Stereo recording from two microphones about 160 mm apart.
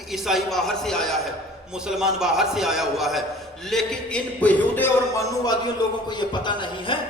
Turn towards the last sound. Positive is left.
turn(degrees=30)  # may be behind; listen again after turning